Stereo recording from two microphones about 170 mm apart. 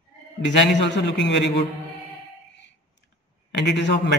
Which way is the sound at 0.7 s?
90° left.